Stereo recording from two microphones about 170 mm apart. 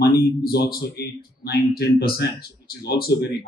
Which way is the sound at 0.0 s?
65° left (ahead or behind).